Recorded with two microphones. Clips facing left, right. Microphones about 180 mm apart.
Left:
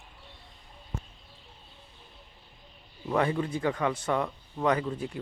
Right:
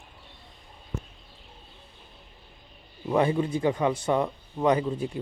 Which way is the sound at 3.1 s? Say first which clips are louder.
Right 4 dB; 20° right (ahead or behind).